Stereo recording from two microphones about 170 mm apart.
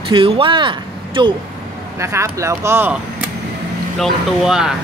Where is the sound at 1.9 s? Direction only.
15° right (ahead or behind).